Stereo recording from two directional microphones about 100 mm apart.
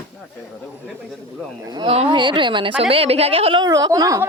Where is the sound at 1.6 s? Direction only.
45° right (ahead or behind).